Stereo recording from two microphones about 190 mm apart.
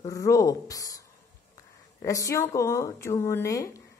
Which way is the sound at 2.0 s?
15° left (ahead or behind).